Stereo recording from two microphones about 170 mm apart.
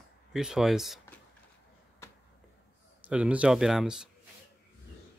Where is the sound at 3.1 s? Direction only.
5° right (ahead or behind).